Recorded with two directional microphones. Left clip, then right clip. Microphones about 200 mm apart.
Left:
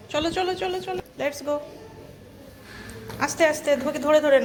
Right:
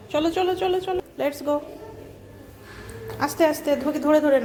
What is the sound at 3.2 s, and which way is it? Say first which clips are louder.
A woman's voice: even; 15° right (ahead or behind).